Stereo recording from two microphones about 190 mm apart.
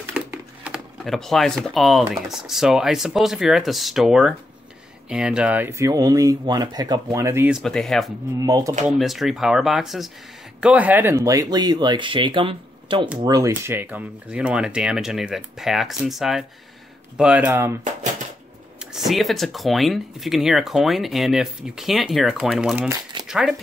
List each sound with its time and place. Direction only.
0.0 s typewriter: 5° right (ahead or behind)
1.6 s speech: centre (ahead or behind)
7.5 s speech: centre (ahead or behind)
8.4 s speech: 20° right (ahead or behind)
8.8 s speech: centre (ahead or behind); by 13.5 s 20° right (ahead or behind)
13.5 s speech: 10° right (ahead or behind)
18.9 s speech: centre (ahead or behind)
23.2 s crumpling: 5° right (ahead or behind)